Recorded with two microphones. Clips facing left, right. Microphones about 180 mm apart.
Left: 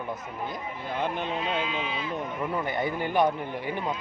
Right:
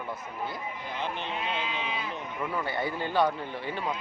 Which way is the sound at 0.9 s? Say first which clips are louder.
Left 5 dB; 50° left (ahead or behind).